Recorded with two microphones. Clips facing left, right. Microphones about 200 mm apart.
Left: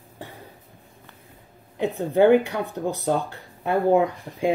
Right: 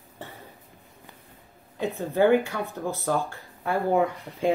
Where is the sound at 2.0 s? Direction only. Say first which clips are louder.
Left 4 dB; 20° left (ahead or behind).